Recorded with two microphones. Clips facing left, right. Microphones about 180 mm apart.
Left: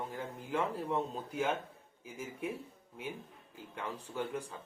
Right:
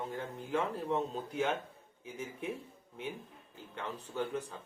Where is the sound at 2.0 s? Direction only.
5° left (ahead or behind).